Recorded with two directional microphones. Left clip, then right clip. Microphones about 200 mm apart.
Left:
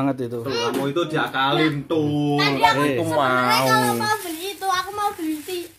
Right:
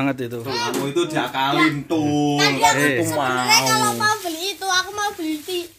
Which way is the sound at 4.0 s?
45° right (ahead or behind).